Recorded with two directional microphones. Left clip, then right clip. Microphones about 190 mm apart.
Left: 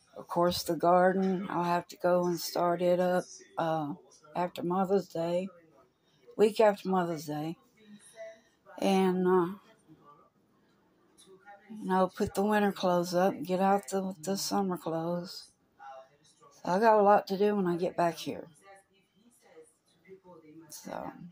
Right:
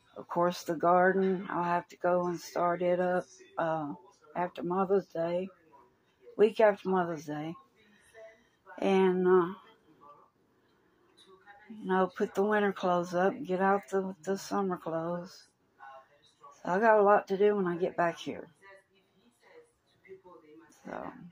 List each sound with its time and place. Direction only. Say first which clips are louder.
0.1 s speech: left 1 dB; 10° left (ahead or behind)
8.7 s speech: right 1 dB; 10° left (ahead or behind)
11.8 s speech: left 1 dB; 10° left (ahead or behind)
16.5 s speech: even; 10° left (ahead or behind)
20.8 s speech: left 1 dB; 10° left (ahead or behind)